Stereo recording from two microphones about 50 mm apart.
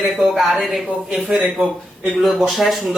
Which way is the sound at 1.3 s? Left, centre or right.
Right.